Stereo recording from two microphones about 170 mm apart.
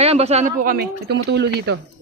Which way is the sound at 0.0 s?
40° right (ahead or behind).